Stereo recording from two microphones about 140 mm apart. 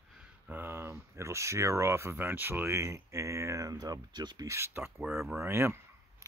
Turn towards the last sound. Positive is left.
turn(degrees=-15)  # may be behind; listen again after turning